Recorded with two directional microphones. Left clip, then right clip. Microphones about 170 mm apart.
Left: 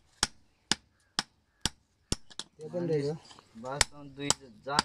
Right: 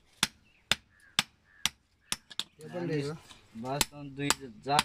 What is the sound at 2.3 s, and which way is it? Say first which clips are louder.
Speech: right 2 dB; 10° right (ahead or behind).